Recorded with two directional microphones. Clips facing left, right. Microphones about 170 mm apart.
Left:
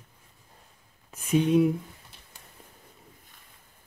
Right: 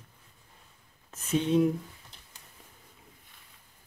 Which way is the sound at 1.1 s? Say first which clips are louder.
Left 5 dB; 10° left (ahead or behind).